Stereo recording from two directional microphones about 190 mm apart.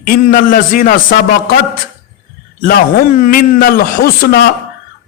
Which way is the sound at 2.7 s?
50° left (ahead or behind).